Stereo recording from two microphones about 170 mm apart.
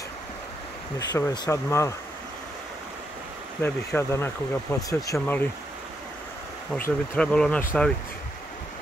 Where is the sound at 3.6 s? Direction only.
15° left (ahead or behind).